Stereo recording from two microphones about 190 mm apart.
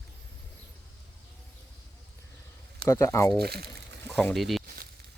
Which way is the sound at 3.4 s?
55° right (ahead or behind).